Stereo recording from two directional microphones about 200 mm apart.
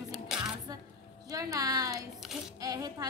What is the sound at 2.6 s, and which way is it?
Speech, 20° right (ahead or behind).